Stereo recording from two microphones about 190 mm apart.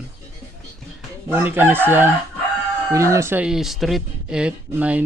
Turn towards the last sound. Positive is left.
turn(degrees=-10)  # may be behind; listen again after turning